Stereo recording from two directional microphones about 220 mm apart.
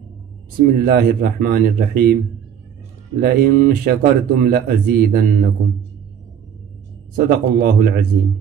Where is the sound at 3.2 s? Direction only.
45° right (ahead or behind).